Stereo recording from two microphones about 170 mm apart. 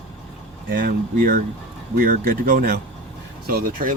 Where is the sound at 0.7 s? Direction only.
55° right (ahead or behind).